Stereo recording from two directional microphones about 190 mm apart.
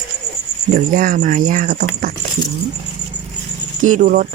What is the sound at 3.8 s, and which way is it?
Speech, 40° right (ahead or behind).